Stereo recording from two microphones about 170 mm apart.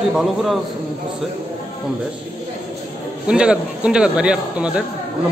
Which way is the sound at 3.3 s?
5° right (ahead or behind).